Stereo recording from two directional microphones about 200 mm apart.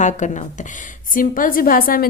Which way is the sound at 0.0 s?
35° left (ahead or behind).